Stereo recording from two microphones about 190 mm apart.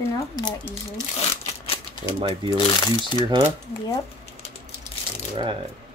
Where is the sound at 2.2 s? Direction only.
25° right (ahead or behind).